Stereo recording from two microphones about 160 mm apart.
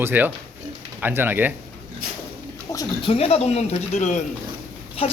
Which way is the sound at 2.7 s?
30° left (ahead or behind).